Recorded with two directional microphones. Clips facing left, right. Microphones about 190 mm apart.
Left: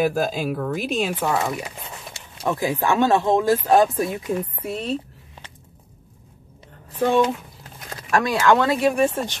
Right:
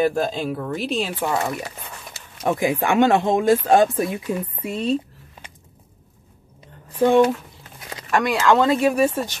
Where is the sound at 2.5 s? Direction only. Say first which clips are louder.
Right 2 dB; 15° right (ahead or behind).